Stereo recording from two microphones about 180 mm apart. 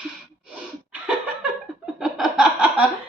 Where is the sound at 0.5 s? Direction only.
5° right (ahead or behind).